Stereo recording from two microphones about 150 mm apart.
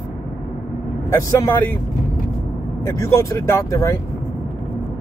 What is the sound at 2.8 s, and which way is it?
Speech, 20° left (ahead or behind).